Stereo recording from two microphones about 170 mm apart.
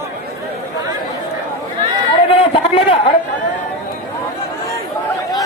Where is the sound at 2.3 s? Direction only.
35° left (ahead or behind).